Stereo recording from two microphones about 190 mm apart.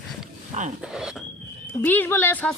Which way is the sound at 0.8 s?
5° right (ahead or behind).